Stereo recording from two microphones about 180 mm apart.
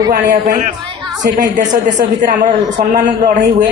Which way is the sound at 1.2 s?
45° right (ahead or behind).